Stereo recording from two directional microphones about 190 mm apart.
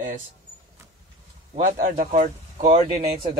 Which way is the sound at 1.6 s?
40° right (ahead or behind).